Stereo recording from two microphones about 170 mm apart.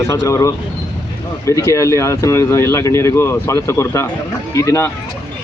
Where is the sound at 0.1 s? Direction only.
20° left (ahead or behind).